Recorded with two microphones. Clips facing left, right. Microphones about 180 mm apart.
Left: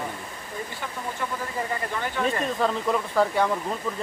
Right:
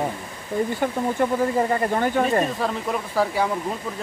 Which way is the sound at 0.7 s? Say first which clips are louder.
Right 9 dB; 45° right (ahead or behind).